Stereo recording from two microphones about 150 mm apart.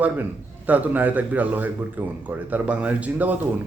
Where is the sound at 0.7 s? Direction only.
10° right (ahead or behind).